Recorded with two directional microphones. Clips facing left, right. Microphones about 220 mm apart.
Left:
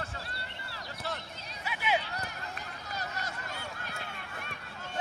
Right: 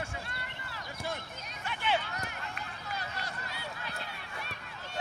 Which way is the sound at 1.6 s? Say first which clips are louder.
Left 1 dB; 5° left (ahead or behind).